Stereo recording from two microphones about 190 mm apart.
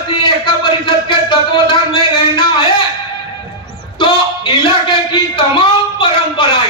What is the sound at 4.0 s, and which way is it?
A man's voice, 25° left (ahead or behind).